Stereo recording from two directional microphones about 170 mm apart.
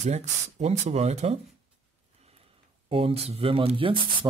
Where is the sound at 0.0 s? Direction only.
40° right (ahead or behind).